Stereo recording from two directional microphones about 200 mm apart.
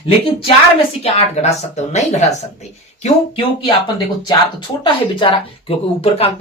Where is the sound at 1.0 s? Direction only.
30° left (ahead or behind).